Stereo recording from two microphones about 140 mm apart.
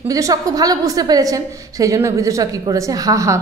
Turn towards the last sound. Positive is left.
turn(degrees=-20)  # may be behind; listen again after turning